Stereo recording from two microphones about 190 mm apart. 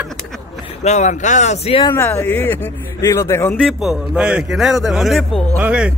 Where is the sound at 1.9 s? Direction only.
10° left (ahead or behind).